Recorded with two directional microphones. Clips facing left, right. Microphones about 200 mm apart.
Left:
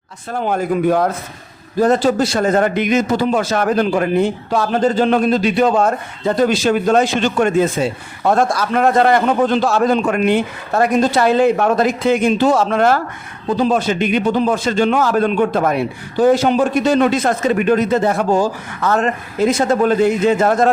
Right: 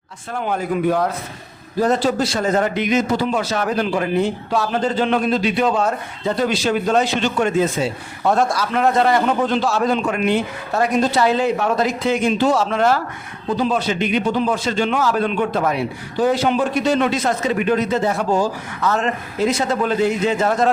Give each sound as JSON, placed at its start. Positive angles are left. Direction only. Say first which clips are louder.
{"t": 0.4, "sound": "a man's voice", "louder": "left 3 dB", "side_deg": 45}